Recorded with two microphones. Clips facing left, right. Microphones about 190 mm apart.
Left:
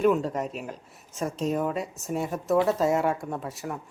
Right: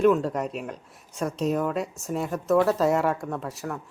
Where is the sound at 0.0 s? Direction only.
Centre (ahead or behind).